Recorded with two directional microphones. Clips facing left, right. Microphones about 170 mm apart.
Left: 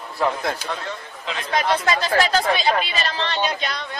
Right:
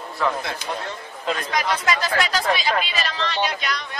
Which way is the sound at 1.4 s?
30° left (ahead or behind).